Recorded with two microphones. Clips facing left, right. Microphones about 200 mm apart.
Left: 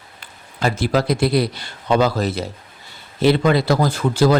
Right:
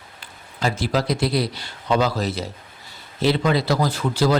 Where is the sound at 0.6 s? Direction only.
55° left (ahead or behind).